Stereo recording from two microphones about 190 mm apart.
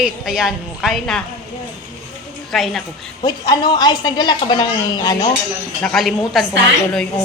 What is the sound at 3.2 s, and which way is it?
A woman's voice, 20° left (ahead or behind).